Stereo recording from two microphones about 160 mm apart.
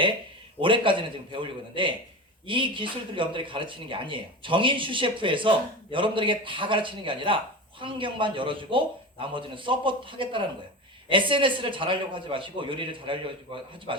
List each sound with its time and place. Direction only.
0.6 s speech: 30° right (ahead or behind)